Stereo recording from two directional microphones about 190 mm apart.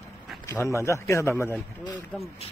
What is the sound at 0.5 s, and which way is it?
Speech, 15° left (ahead or behind).